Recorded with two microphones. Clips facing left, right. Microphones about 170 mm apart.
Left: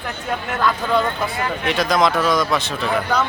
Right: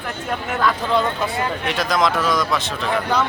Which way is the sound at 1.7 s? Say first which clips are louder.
Left 3 dB; centre (ahead or behind).